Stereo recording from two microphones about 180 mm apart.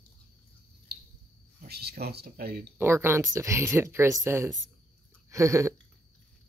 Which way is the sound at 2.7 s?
15° right (ahead or behind).